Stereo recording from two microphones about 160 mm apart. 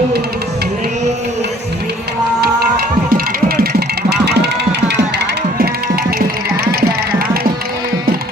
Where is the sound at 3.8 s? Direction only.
90° right; by 7.3 s 70° right (ahead or behind).